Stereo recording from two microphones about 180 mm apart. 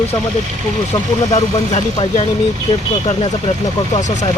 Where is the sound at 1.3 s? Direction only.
35° left (ahead or behind).